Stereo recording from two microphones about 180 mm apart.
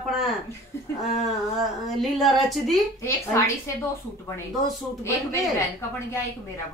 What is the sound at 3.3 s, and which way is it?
Speech, 15° left (ahead or behind).